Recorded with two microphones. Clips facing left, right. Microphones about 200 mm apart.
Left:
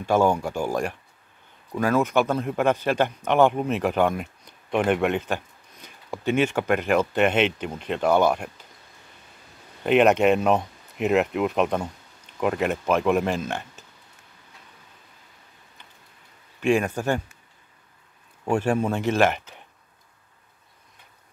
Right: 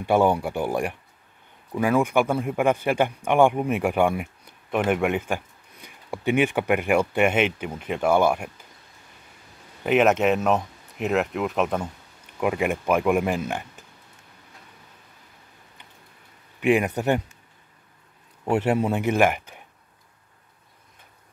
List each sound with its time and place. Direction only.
0.0 s speech: 15° right (ahead or behind)
9.8 s speech: centre (ahead or behind)
16.6 s speech: 15° right (ahead or behind)
18.5 s speech: 20° right (ahead or behind)